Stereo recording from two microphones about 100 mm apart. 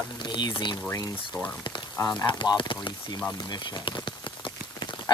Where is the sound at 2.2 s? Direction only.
50° left (ahead or behind).